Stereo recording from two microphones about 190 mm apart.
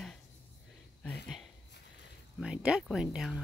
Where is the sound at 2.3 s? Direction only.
5° right (ahead or behind).